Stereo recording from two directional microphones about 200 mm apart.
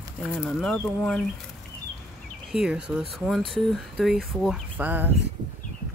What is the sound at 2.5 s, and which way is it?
Speech, 5° right (ahead or behind).